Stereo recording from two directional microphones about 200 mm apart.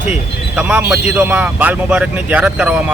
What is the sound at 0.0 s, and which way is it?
Speech, 5° right (ahead or behind).